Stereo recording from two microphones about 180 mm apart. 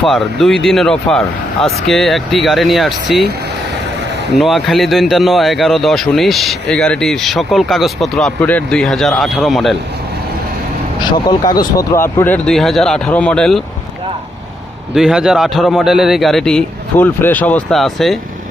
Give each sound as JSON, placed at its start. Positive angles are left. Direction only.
{"t": 0.0, "sound": "speech", "side_deg": 0}
{"t": 4.4, "sound": "speech", "side_deg": 0}
{"t": 11.0, "sound": "speech", "side_deg": 20}
{"t": 12.2, "sound": "speech", "side_deg": 5}
{"t": 14.9, "sound": "speech", "side_deg": -5}